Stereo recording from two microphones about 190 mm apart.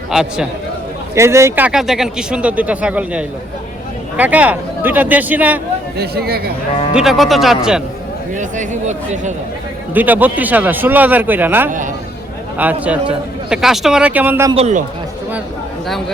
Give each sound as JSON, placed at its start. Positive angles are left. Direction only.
{"t": 0.1, "sound": "speech", "side_deg": -5}
{"t": 1.1, "sound": "speech", "side_deg": -15}
{"t": 6.0, "sound": "speech", "side_deg": -55}
{"t": 6.9, "sound": "speech", "side_deg": 0}
{"t": 8.4, "sound": "speech", "side_deg": -40}
{"t": 9.9, "sound": "speech", "side_deg": -10}
{"t": 14.5, "sound": "speech", "side_deg": -35}